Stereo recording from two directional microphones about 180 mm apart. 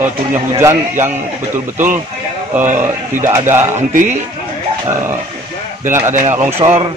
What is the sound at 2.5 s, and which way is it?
Speech, 10° right (ahead or behind).